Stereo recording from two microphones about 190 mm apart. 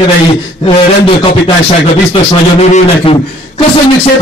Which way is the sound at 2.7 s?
30° left (ahead or behind).